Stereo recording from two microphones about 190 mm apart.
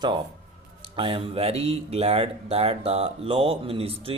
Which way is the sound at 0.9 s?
30° right (ahead or behind).